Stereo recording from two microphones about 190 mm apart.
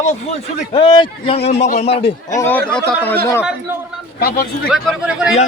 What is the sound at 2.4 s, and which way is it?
Speech, 10° left (ahead or behind).